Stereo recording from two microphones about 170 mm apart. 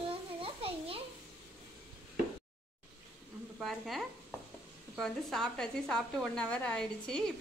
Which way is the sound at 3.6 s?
Centre (ahead or behind).